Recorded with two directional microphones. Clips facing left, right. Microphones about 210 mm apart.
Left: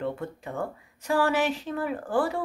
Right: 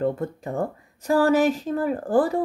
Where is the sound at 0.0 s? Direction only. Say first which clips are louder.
Right 6 dB; 40° right (ahead or behind).